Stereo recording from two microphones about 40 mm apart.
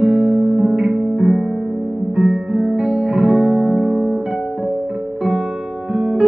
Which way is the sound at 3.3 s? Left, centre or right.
Centre.